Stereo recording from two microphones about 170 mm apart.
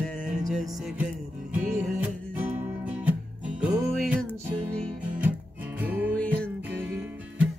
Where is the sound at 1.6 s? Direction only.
45° right (ahead or behind).